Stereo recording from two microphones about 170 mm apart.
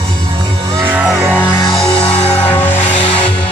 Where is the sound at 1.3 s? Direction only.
10° left (ahead or behind).